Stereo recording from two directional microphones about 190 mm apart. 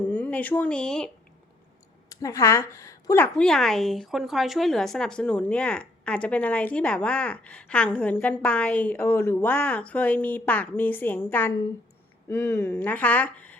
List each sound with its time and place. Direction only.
0.1 s speech: 10° left (ahead or behind)
2.0 s a woman's voice: 15° left (ahead or behind)
3.3 s a woman's voice: 5° left (ahead or behind)